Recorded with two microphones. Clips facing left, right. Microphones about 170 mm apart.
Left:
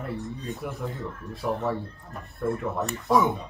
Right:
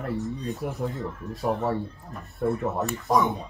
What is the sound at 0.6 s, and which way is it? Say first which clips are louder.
Speech: right 2 dB; 40° right (ahead or behind).